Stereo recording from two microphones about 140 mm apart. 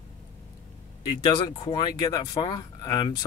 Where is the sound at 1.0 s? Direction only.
30° left (ahead or behind).